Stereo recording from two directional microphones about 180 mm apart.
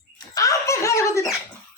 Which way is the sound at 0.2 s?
20° left (ahead or behind).